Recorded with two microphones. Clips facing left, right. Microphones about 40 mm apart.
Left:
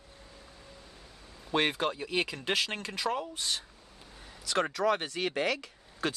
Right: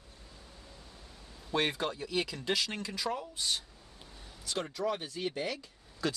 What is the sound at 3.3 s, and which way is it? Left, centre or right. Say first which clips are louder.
Speech: even; left.